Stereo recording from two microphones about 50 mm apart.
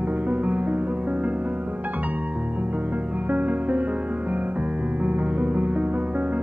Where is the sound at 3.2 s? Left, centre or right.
Right.